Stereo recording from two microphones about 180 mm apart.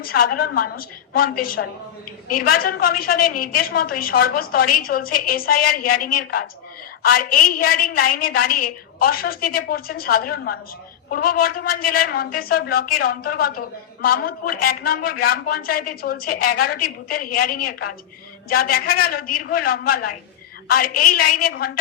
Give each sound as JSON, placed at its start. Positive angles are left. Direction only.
{"t": 0.0, "sound": "a woman's voice", "side_deg": 55}